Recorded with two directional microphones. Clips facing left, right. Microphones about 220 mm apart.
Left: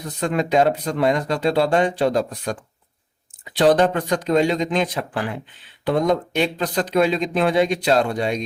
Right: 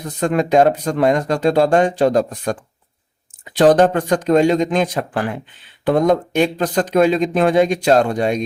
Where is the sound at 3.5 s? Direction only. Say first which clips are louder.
Right 4 dB; 45° right (ahead or behind).